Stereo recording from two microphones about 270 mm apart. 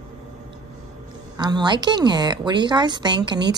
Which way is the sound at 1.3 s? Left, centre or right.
Centre.